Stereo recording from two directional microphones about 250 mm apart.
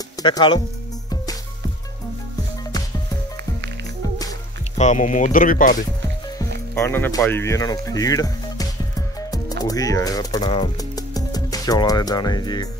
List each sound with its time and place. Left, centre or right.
0.2 s speech: centre
4.7 s speech: left
6.7 s speech: centre